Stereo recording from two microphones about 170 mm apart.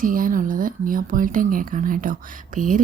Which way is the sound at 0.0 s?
55° right (ahead or behind).